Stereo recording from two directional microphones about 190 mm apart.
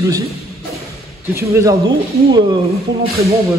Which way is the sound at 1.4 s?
15° right (ahead or behind).